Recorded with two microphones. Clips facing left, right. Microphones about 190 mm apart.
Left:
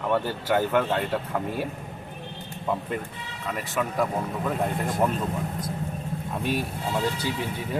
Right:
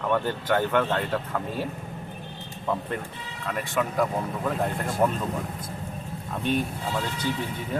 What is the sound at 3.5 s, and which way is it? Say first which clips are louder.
Speech: right 1 dB; centre (ahead or behind).